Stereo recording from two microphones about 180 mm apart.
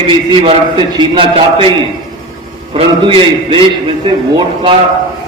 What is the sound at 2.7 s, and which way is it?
A man's voice, 30° right (ahead or behind).